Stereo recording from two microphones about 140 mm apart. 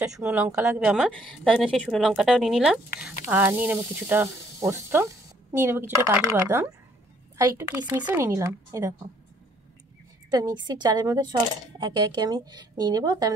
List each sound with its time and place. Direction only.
0.2 s speech: 15° right (ahead or behind)
10.3 s speech: 30° right (ahead or behind)